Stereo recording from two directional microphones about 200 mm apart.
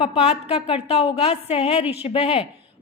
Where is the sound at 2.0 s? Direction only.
30° left (ahead or behind).